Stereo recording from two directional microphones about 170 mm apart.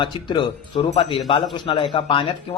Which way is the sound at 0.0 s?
25° left (ahead or behind).